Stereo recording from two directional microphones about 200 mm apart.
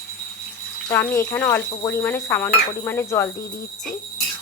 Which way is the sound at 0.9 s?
10° left (ahead or behind).